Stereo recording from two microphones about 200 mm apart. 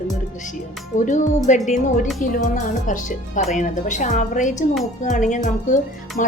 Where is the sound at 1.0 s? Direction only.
40° left (ahead or behind).